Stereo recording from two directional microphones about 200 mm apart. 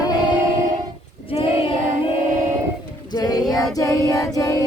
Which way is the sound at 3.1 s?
20° left (ahead or behind).